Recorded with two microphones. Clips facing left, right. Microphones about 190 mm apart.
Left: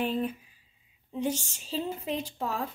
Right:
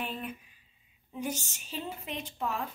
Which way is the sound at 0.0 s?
35° left (ahead or behind).